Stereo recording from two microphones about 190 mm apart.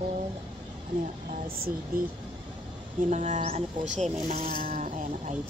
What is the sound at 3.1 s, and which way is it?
Speech, 40° right (ahead or behind).